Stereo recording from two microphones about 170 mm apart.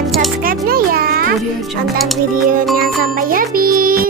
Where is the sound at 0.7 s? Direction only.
60° right (ahead or behind).